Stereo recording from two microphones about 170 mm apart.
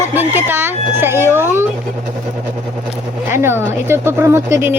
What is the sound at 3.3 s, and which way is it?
A woman's voice, 15° right (ahead or behind).